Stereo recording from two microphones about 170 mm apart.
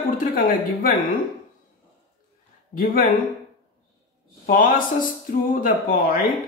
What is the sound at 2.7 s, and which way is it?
Speech, 55° left (ahead or behind).